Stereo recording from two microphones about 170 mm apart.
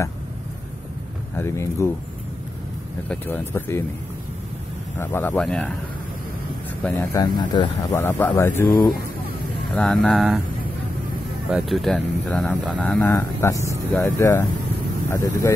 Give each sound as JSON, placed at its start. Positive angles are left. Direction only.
{"t": 1.4, "sound": "speech", "side_deg": 15}
{"t": 3.1, "sound": "speech", "side_deg": 10}
{"t": 4.9, "sound": "speech", "side_deg": 15}
{"t": 6.8, "sound": "speech", "side_deg": 10}
{"t": 8.0, "sound": "speech", "side_deg": 15}
{"t": 9.8, "sound": "speech", "side_deg": 5}
{"t": 11.5, "sound": "speech", "side_deg": 0}